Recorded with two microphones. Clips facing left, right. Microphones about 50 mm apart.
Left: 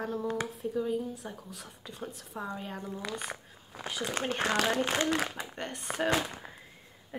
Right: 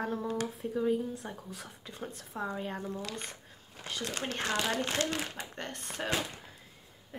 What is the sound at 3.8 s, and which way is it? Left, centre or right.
Speech, centre.